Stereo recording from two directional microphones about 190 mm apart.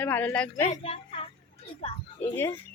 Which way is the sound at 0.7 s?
35° left (ahead or behind).